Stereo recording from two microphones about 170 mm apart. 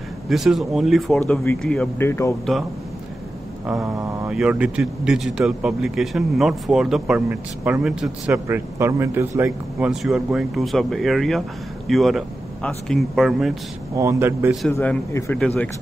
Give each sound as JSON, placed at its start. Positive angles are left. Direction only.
{"t": 0.3, "sound": "speech", "side_deg": 0}
{"t": 1.2, "sound": "a man's voice", "side_deg": 10}
{"t": 2.0, "sound": "a man's voice", "side_deg": 15}
{"t": 3.6, "sound": "speech", "side_deg": -5}
{"t": 8.3, "sound": "speech", "side_deg": -15}
{"t": 13.9, "sound": "speech", "side_deg": -15}
{"t": 14.7, "sound": "a man's voice", "side_deg": 10}